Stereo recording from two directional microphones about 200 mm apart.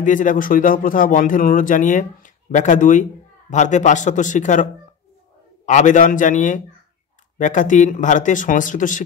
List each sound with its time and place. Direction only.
0.0 s speech: 40° left (ahead or behind)
5.7 s speech: 40° left (ahead or behind)